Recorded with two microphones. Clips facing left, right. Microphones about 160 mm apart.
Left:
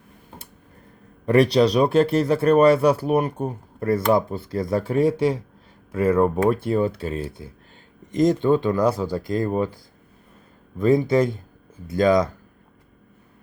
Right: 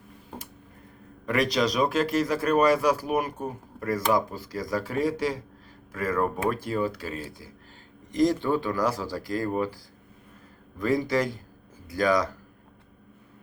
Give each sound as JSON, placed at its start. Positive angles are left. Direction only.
{"t": 1.2, "sound": "speech", "side_deg": 30}